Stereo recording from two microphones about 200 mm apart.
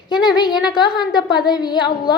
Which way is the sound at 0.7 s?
20° left (ahead or behind).